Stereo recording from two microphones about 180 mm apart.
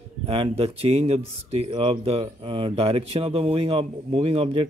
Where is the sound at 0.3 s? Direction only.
30° right (ahead or behind).